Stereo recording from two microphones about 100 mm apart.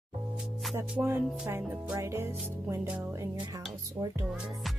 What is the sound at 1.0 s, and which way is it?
Speech, 25° right (ahead or behind).